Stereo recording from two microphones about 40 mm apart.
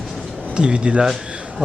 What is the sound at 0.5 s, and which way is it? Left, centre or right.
Speech, right.